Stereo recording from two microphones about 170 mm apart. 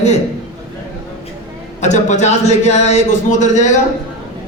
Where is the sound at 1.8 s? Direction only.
45° left (ahead or behind).